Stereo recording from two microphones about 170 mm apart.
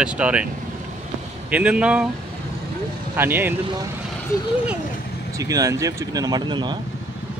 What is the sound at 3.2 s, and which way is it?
Speech, 10° right (ahead or behind).